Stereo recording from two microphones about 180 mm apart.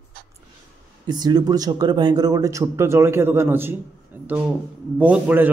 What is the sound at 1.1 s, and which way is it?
A man's voice, 25° right (ahead or behind).